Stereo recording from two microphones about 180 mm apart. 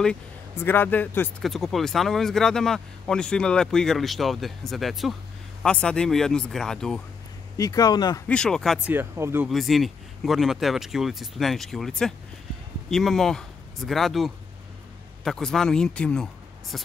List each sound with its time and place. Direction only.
0.0 s speech: 10° left (ahead or behind)
7.5 s speech: 20° left (ahead or behind)
8.3 s speech: 5° left (ahead or behind); by 9.5 s 15° right (ahead or behind)
9.5 s speech: centre (ahead or behind)